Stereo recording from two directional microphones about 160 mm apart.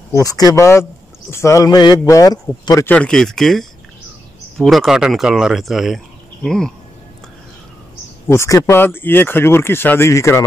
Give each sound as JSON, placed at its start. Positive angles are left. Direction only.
{"t": 0.1, "sound": "speech", "side_deg": 20}
{"t": 2.9, "sound": "speech", "side_deg": 5}
{"t": 8.3, "sound": "speech", "side_deg": 15}